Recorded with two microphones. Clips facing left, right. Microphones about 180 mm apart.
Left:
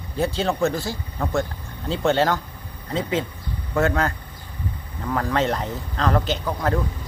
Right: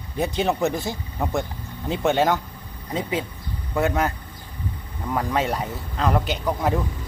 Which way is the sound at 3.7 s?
15° right (ahead or behind).